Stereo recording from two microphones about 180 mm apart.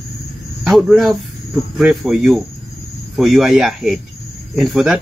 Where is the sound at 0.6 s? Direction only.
Centre (ahead or behind).